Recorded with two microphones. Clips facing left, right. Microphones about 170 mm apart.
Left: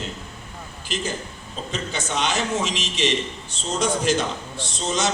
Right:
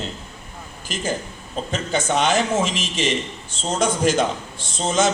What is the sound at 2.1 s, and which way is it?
A man's voice, 50° right (ahead or behind).